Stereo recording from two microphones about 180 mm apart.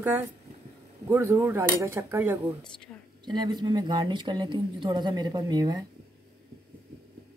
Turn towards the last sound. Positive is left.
turn(degrees=-20)  # may be behind; listen again after turning